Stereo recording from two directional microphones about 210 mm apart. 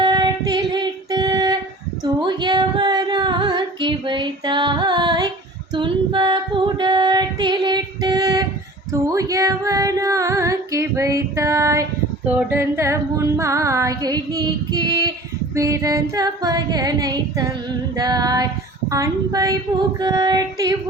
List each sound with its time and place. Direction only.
0.0 s child singing: 20° right (ahead or behind)
2.2 s female singing: 20° right (ahead or behind)
12.4 s a sound: 10° right (ahead or behind)
20.0 s child singing: 20° right (ahead or behind)